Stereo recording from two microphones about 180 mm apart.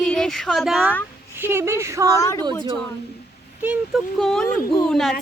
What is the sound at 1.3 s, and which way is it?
Speech, 10° right (ahead or behind).